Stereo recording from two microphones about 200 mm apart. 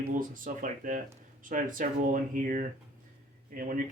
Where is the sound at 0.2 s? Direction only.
40° right (ahead or behind).